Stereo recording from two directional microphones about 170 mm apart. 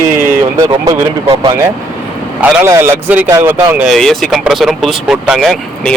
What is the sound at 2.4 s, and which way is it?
A man's voice, 15° right (ahead or behind).